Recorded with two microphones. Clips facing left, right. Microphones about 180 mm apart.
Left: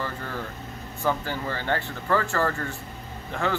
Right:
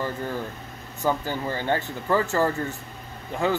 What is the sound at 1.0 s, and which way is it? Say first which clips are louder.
Speech: right 2 dB; 15° right (ahead or behind).